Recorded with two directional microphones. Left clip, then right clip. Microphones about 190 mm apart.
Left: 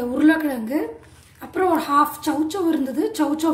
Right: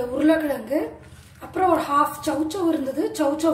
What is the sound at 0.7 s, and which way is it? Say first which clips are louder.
A woman's voice: even; 50° left (ahead or behind).